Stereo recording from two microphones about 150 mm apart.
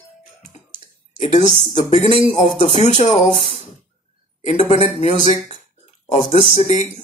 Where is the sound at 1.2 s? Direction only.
40° left (ahead or behind).